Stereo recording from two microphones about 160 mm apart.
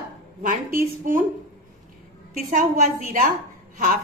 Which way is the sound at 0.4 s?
60° right (ahead or behind).